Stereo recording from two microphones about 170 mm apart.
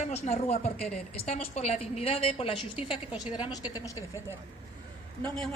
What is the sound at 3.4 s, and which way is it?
Speech, 25° left (ahead or behind).